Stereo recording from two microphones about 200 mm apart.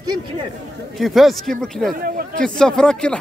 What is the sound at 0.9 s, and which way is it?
Speech, centre (ahead or behind).